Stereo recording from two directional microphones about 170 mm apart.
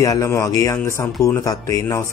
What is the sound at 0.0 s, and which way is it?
Speech, 20° left (ahead or behind).